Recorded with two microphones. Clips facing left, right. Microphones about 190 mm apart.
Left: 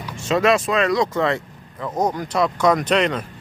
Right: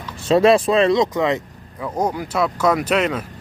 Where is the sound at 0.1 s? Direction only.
35° right (ahead or behind).